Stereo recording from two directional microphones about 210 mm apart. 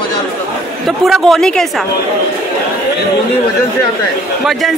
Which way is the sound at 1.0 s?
Centre (ahead or behind).